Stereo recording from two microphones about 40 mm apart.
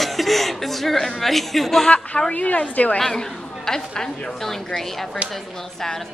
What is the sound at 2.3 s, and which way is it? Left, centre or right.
Speech, left.